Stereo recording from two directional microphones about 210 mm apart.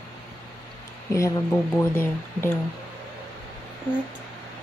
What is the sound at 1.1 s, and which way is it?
Speech, 15° left (ahead or behind).